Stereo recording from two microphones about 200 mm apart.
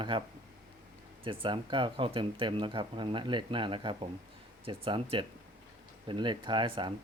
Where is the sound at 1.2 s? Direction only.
25° right (ahead or behind).